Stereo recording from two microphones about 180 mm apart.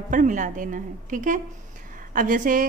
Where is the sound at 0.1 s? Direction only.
45° right (ahead or behind).